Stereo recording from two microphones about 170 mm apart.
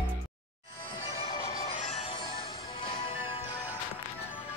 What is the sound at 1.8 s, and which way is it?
Music, 40° left (ahead or behind).